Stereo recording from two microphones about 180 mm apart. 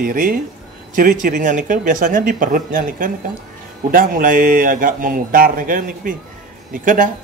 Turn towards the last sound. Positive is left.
turn(degrees=-45)  # may be behind; listen again after turning